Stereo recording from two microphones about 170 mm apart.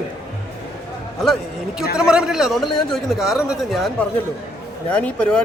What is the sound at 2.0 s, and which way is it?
A man's voice, 5° right (ahead or behind).